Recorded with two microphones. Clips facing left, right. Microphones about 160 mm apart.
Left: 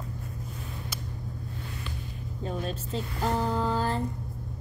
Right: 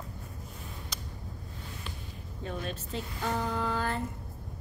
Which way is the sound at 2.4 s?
35° left (ahead or behind).